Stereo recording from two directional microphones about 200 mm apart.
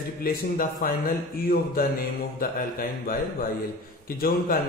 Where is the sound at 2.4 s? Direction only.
45° left (ahead or behind).